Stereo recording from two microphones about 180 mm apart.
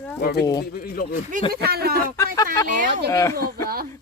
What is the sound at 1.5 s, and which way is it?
Speech, 60° right (ahead or behind).